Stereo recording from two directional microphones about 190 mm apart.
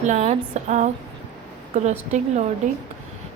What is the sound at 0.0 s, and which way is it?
A woman's voice, 35° right (ahead or behind).